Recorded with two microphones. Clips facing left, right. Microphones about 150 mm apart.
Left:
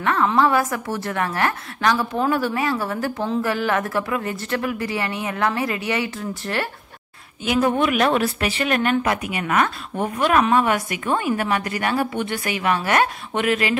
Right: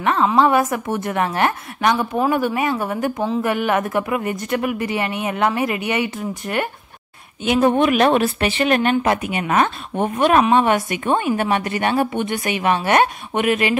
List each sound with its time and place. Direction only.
0.0 s speech: 20° right (ahead or behind)